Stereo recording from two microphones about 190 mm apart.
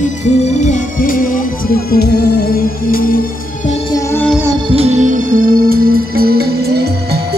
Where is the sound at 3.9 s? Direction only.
15° left (ahead or behind).